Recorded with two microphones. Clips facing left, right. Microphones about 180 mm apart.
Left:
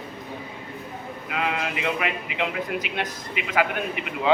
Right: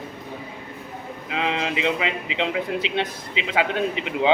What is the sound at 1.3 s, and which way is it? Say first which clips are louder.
Speech: right 2 dB; 25° right (ahead or behind).